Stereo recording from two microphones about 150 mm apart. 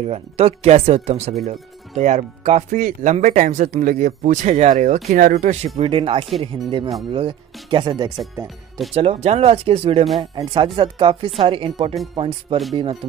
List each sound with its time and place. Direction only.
0.0 s speech: 45° right (ahead or behind)
2.8 s speech: 55° right (ahead or behind)
5.8 s speech: 35° right (ahead or behind)
10.3 s speech: 30° right (ahead or behind)